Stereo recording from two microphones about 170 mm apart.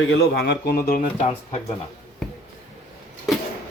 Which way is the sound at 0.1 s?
75° left (ahead or behind).